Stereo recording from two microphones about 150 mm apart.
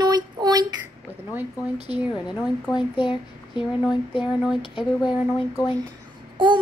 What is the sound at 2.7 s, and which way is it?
Speech, 30° left (ahead or behind).